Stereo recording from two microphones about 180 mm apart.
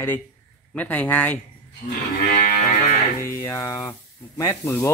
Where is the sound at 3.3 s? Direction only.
15° left (ahead or behind).